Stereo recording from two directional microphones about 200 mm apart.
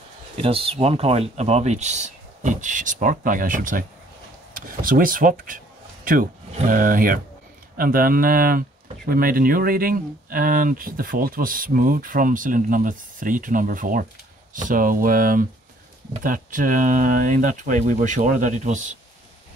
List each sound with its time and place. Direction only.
0.4 s speech: 30° right (ahead or behind); by 5.6 s 45° right (ahead or behind)
6.7 s speech: 45° right (ahead or behind)